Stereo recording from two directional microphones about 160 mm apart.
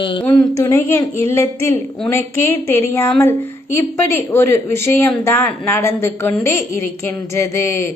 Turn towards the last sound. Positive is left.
turn(degrees=15)  # may be behind; listen again after turning